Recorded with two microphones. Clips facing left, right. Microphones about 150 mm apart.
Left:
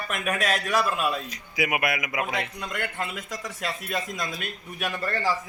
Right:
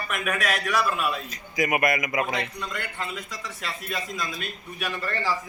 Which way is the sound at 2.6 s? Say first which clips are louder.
Left 2 dB; 50° left (ahead or behind).